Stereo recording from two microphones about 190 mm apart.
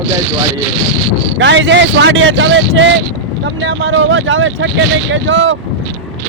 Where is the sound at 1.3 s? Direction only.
75° right (ahead or behind).